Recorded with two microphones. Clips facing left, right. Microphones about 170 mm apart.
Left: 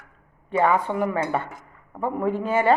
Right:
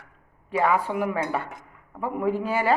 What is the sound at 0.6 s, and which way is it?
A woman's voice, 5° right (ahead or behind).